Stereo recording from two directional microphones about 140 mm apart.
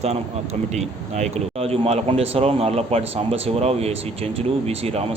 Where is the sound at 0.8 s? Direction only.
50° right (ahead or behind).